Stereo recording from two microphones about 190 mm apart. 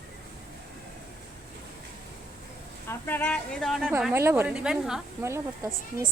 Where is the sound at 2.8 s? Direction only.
10° left (ahead or behind).